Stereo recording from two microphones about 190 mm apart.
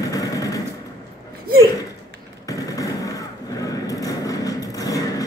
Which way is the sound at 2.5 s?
20° left (ahead or behind).